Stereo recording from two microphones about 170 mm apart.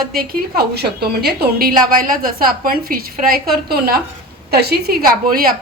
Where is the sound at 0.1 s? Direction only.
65° right (ahead or behind).